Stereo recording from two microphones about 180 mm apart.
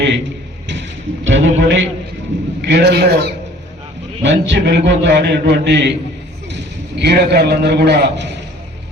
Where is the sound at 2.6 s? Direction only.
70° right (ahead or behind).